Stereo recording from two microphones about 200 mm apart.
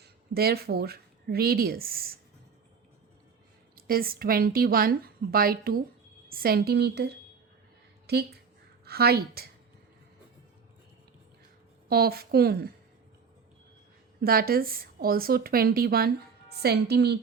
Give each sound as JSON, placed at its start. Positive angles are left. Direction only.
{"t": 0.0, "sound": "a woman's voice", "side_deg": -50}
{"t": 3.8, "sound": "a woman's voice", "side_deg": -45}
{"t": 11.9, "sound": "speech", "side_deg": -50}
{"t": 14.2, "sound": "speech", "side_deg": -50}